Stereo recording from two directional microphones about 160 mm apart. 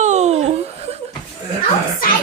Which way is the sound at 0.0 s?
45° right (ahead or behind).